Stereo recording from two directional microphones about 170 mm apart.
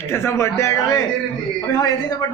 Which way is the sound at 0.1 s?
15° left (ahead or behind).